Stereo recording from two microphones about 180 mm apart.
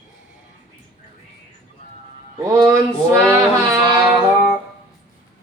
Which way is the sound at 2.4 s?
20° right (ahead or behind).